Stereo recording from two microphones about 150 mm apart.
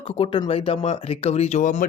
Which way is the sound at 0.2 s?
35° left (ahead or behind).